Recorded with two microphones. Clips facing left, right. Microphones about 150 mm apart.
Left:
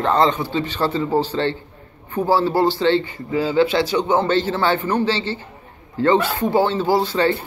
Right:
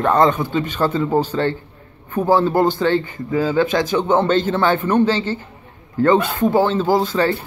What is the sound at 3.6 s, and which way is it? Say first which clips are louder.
Speech: left 1 dB; 45° right (ahead or behind).